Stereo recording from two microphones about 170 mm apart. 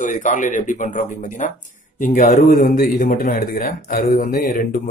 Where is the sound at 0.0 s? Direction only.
45° left (ahead or behind).